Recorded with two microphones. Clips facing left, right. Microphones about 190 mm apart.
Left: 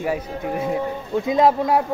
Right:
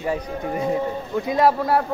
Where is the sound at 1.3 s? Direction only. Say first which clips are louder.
Left 2 dB; 20° left (ahead or behind).